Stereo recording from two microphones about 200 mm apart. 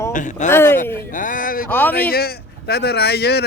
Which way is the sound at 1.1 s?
40° left (ahead or behind).